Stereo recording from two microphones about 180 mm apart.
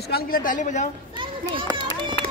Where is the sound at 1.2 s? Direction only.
25° right (ahead or behind).